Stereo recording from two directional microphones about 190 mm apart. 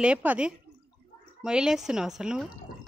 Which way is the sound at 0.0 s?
5° right (ahead or behind).